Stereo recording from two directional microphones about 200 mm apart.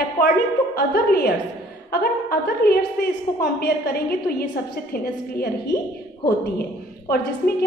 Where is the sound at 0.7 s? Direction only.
50° left (ahead or behind).